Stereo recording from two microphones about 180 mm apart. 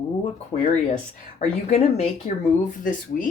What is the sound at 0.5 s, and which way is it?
Speech, 35° left (ahead or behind).